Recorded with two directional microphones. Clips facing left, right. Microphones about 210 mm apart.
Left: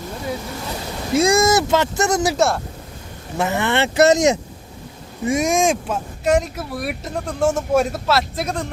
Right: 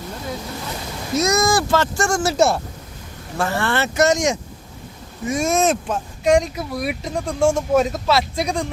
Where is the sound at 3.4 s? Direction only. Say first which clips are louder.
Left 2 dB; 20° left (ahead or behind); by 4.4 s 35° left (ahead or behind).